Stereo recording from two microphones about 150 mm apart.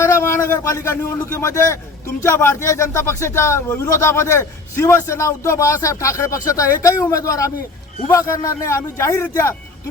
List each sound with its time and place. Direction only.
0.0 s a man's voice: 20° left (ahead or behind)